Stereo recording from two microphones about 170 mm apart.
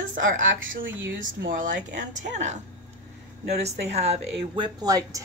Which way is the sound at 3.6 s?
40° right (ahead or behind).